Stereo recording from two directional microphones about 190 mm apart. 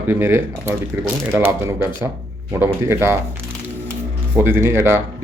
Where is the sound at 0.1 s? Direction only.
10° right (ahead or behind).